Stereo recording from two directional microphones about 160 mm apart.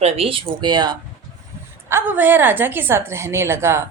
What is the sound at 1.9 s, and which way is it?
A woman's voice, 15° right (ahead or behind).